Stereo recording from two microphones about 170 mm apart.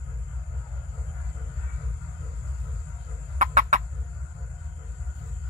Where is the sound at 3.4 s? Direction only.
50° right (ahead or behind).